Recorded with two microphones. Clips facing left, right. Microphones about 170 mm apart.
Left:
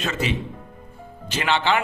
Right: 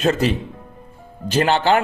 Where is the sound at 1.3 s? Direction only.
40° right (ahead or behind).